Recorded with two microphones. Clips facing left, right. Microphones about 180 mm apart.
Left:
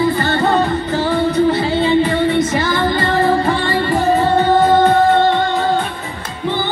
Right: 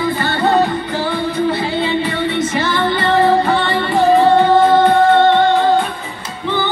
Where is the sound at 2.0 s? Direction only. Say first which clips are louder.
Left 4 dB; 45° left (ahead or behind).